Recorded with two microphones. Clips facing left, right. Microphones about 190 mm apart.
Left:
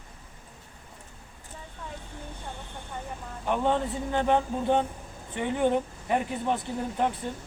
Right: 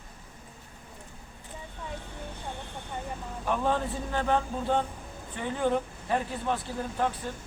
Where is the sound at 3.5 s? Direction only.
20° left (ahead or behind).